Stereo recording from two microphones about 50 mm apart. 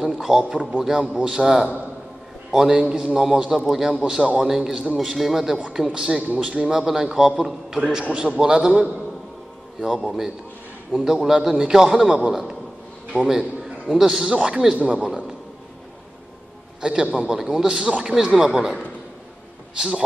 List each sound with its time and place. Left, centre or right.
0.0 s a man's voice: centre
8.0 s a man's voice: right
8.4 s a man's voice: centre
10.0 s a man's voice: centre
16.8 s a man's voice: centre
18.1 s a man's voice: centre